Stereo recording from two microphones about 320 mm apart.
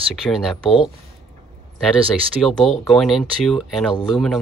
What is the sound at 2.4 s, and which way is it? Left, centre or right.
Speech, centre.